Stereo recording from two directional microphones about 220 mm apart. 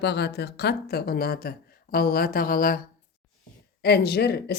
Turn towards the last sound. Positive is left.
turn(degrees=45)  # may be behind; listen again after turning